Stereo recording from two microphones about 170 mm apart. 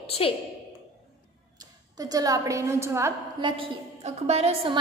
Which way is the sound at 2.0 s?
20° right (ahead or behind).